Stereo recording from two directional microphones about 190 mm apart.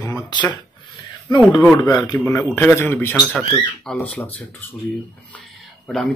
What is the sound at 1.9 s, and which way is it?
A man's voice, 20° left (ahead or behind).